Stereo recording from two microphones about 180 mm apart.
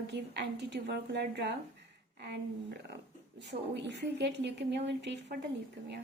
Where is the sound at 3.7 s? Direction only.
70° right (ahead or behind).